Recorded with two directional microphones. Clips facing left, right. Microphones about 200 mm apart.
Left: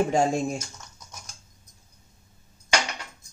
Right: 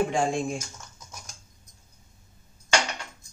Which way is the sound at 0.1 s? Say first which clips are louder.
Left 3 dB; 40° left (ahead or behind).